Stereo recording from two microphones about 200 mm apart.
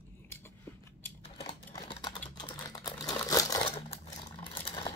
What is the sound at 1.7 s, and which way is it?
Typing, 20° left (ahead or behind).